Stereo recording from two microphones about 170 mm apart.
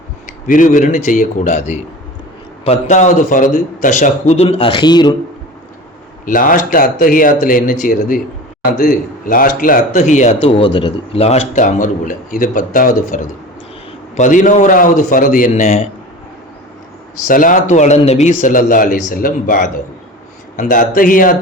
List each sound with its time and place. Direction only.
0.4 s a man's voice: 50° left (ahead or behind); by 5.1 s 25° left (ahead or behind)
6.2 s a man's voice: 55° left (ahead or behind)
10.5 s a man's voice: 30° left (ahead or behind); by 15.8 s 50° left (ahead or behind)
17.2 s a man's voice: 50° left (ahead or behind)